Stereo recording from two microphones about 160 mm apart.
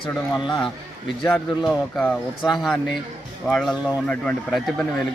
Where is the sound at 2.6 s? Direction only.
Centre (ahead or behind).